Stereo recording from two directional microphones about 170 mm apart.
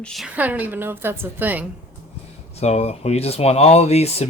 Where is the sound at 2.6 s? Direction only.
40° left (ahead or behind).